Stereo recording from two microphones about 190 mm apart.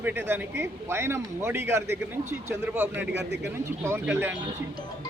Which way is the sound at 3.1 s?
65° right (ahead or behind).